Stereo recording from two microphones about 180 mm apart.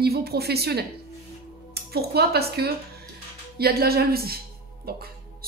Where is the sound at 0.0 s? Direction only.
60° right (ahead or behind).